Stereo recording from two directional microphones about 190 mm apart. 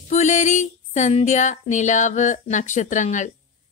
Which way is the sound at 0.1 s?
40° left (ahead or behind).